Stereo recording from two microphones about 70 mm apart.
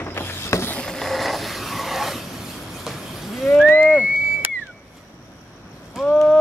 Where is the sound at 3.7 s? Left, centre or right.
Left.